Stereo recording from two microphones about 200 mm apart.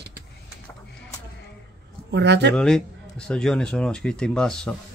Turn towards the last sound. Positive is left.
turn(degrees=5)  # may be behind; listen again after turning